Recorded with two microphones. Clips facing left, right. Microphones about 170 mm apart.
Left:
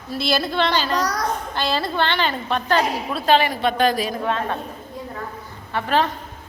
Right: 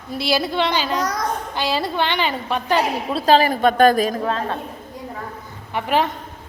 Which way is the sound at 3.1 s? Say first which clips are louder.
Right 4 dB; 35° right (ahead or behind).